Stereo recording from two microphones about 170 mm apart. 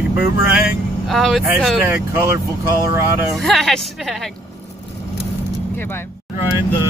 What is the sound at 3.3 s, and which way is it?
Speech, centre (ahead or behind).